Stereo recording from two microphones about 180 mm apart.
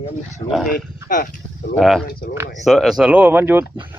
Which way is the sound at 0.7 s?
50° left (ahead or behind).